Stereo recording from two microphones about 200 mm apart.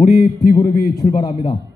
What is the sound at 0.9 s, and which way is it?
Speech, 20° left (ahead or behind).